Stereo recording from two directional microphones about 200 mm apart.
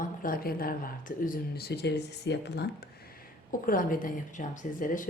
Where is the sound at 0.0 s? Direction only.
45° left (ahead or behind).